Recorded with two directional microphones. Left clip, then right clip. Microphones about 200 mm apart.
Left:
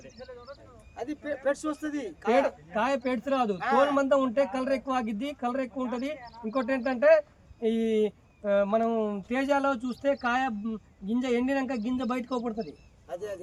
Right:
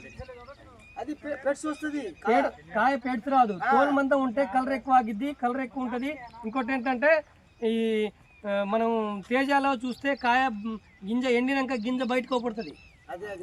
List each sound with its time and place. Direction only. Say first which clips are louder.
0.9 s speech: even; 5° left (ahead or behind)
2.7 s speech: right 3 dB; 35° left (ahead or behind)
3.6 s a man's voice: right 1 dB; centre (ahead or behind)
3.9 s speech: even; 35° left (ahead or behind); by 12.7 s 60° left (ahead or behind)